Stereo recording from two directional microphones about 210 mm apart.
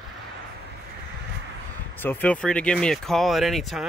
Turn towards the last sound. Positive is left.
turn(degrees=0)  # may be behind; listen again after turning